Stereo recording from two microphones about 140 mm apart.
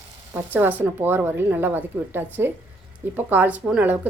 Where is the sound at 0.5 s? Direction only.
10° right (ahead or behind).